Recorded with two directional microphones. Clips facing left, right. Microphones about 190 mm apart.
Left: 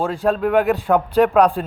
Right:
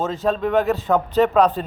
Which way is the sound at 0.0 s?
10° left (ahead or behind).